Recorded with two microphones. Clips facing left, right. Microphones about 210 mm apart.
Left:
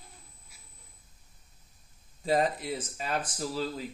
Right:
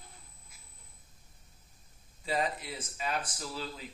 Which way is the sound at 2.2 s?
40° left (ahead or behind).